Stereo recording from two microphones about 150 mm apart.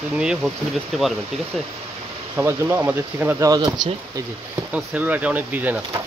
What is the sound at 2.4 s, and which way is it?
Speech, 15° right (ahead or behind).